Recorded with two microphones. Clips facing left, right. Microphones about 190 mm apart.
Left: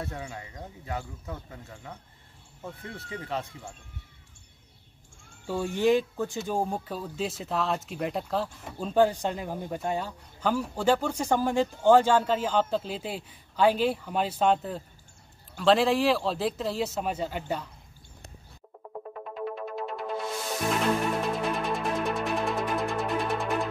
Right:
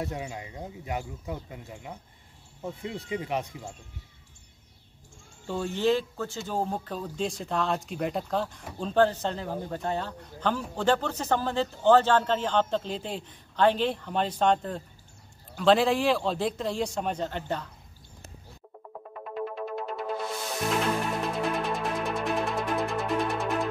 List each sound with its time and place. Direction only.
0.0 s speech: 15° right (ahead or behind)
5.8 s speech: 15° left (ahead or behind)
19.2 s music: centre (ahead or behind)
21.2 s music: centre (ahead or behind)